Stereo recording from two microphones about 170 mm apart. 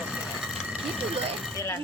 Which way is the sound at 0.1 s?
5° right (ahead or behind).